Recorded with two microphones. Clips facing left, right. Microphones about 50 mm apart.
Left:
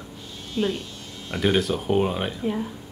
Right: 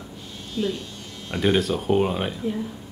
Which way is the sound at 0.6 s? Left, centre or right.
Left.